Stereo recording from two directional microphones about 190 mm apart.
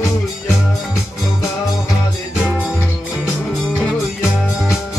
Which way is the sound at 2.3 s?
Centre (ahead or behind).